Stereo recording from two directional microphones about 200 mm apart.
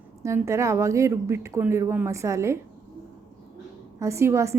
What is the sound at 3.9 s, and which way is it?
Speech, 15° right (ahead or behind).